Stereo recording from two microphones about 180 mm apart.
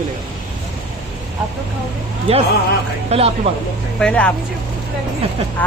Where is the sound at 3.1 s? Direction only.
35° right (ahead or behind).